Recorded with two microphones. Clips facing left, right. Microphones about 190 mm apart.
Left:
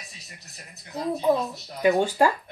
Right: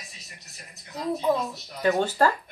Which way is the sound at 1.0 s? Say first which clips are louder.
Left 2 dB; 15° left (ahead or behind).